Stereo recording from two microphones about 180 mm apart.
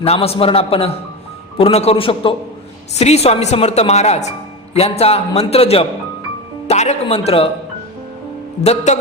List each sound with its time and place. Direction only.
0.0 s a woman's voice: 35° left (ahead or behind)
8.6 s a woman's voice: 35° left (ahead or behind)